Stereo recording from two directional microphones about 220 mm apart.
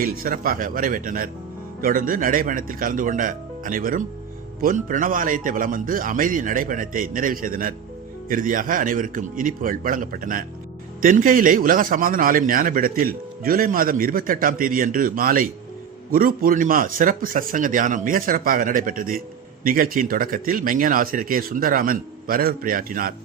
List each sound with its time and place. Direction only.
0.0 s a man's voice: 40° right (ahead or behind)